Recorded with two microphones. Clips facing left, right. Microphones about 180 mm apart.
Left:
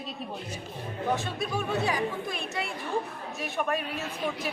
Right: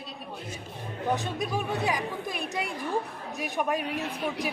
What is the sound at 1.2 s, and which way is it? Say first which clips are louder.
A woman's voice: right 1 dB; 15° right (ahead or behind).